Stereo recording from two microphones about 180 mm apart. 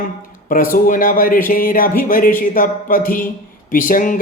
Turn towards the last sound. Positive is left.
turn(degrees=50)  # may be behind; listen again after turning